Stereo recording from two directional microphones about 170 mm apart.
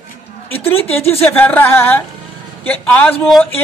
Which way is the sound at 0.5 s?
35° left (ahead or behind).